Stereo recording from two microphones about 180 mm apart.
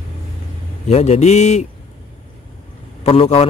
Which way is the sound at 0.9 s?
40° left (ahead or behind).